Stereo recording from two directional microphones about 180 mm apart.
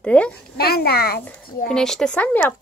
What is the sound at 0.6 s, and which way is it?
Speech, 60° left (ahead or behind).